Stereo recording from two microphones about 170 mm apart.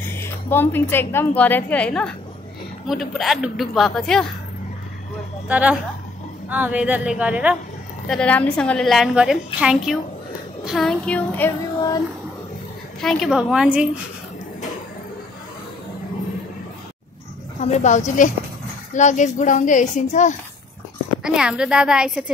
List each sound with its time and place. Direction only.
0.1 s a woman's voice: 15° left (ahead or behind)
5.5 s speech: 10° right (ahead or behind)
8.1 s a woman's voice: 5° left (ahead or behind)
13.0 s a woman's voice: centre (ahead or behind)
17.6 s a woman's voice: 45° left (ahead or behind)
21.2 s a woman's voice: 5° right (ahead or behind)